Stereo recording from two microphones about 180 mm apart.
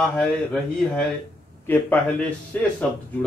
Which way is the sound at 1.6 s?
10° left (ahead or behind).